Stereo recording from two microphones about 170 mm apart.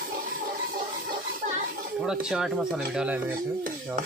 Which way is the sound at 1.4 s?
45° right (ahead or behind).